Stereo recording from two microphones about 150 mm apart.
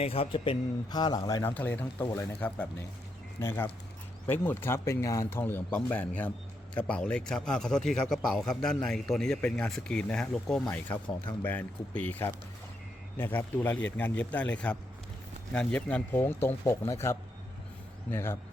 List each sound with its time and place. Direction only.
0.0 s a man's voice: 40° left (ahead or behind); by 1.5 s 25° left (ahead or behind)
1.5 s a man's voice: 10° left (ahead or behind)